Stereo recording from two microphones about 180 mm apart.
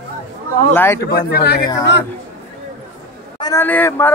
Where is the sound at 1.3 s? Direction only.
65° left (ahead or behind).